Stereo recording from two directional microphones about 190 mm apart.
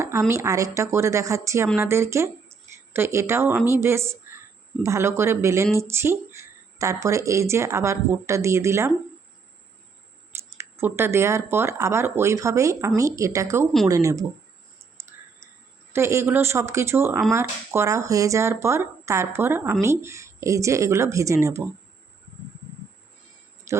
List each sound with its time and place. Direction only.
0.0 s a woman's voice: 15° right (ahead or behind)
10.6 s a woman's voice: 10° right (ahead or behind)
15.9 s a woman's voice: 15° right (ahead or behind)
23.7 s a sound: 15° right (ahead or behind)